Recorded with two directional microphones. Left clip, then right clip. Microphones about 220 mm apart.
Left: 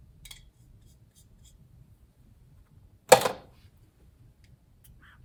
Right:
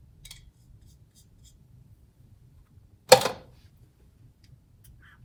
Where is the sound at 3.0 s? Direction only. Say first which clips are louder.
Right 1 dB; 10° left (ahead or behind).